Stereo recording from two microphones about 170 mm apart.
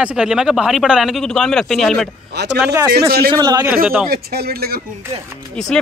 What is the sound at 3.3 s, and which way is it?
Speech, 25° right (ahead or behind).